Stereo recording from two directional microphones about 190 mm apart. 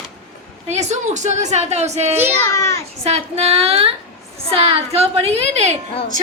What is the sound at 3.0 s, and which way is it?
A woman's voice, 35° right (ahead or behind).